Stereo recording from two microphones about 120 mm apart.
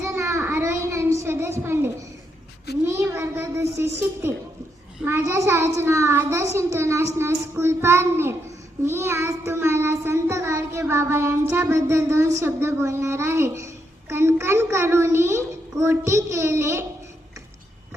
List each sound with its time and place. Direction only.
0.0 s a sound: 25° right (ahead or behind)
2.8 s child singing: 20° right (ahead or behind)
5.0 s a child's voice: 20° right (ahead or behind)
8.9 s child singing: 20° right (ahead or behind)
14.1 s a child's voice: 20° right (ahead or behind)